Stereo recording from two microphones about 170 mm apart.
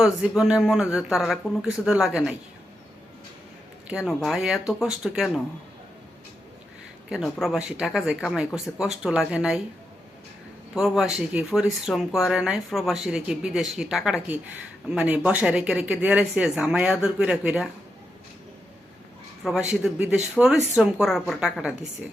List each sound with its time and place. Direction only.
0.0 s speech: 5° right (ahead or behind)
3.8 s speech: 5° right (ahead or behind)
7.1 s speech: centre (ahead or behind)
10.8 s speech: centre (ahead or behind)
19.4 s speech: 5° right (ahead or behind)